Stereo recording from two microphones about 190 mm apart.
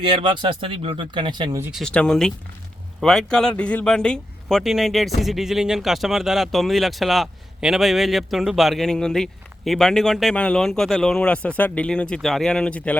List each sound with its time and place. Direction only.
0.0 s speech: 25° right (ahead or behind)
1.7 s speech: 5° left (ahead or behind)